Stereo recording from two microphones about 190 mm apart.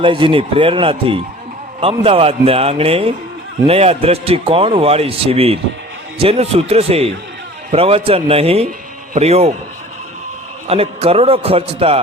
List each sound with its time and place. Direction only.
0.0 s a man's voice: 25° right (ahead or behind)
10.7 s a man's voice: 30° right (ahead or behind)